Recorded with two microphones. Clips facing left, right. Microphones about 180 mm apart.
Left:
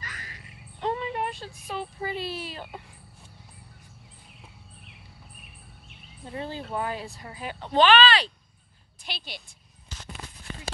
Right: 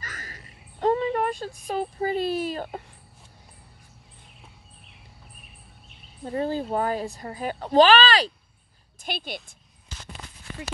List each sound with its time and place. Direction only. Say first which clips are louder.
0.0 s a sound: right 2 dB; 45° right (ahead or behind)
1.7 s speech: right 6 dB; 45° right (ahead or behind)
6.2 s speech: right 8 dB; 45° right (ahead or behind)
9.0 s speech: right 7 dB; 50° right (ahead or behind)